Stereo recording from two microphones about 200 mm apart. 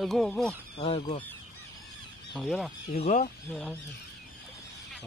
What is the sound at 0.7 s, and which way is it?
Speech, 30° left (ahead or behind).